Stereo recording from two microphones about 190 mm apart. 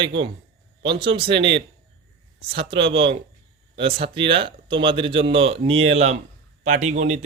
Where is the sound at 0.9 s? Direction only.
25° right (ahead or behind).